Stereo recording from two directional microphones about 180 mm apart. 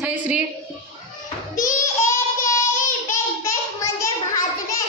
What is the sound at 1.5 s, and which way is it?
Child singing, 15° left (ahead or behind).